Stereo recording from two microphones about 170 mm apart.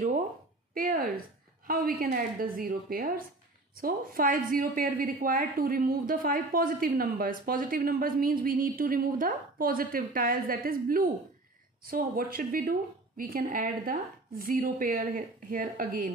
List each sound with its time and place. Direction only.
0.7 s a woman's voice: 55° right (ahead or behind)